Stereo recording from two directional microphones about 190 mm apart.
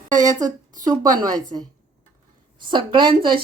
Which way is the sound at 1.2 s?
20° right (ahead or behind).